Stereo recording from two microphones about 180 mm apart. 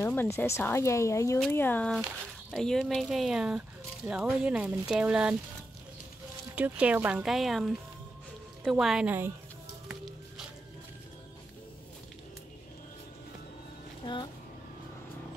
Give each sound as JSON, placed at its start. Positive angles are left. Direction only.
{"t": 0.0, "sound": "speech", "side_deg": 15}
{"t": 6.5, "sound": "speech", "side_deg": -5}
{"t": 14.0, "sound": "speech", "side_deg": 25}